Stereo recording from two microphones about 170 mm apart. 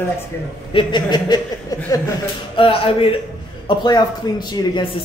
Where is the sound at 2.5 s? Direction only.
30° left (ahead or behind).